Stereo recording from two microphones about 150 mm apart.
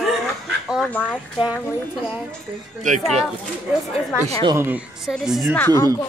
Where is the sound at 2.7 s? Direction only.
55° right (ahead or behind).